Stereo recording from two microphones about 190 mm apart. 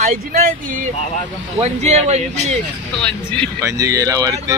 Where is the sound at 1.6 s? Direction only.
35° right (ahead or behind).